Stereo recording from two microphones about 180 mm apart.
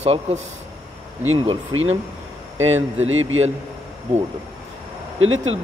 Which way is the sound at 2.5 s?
90° right.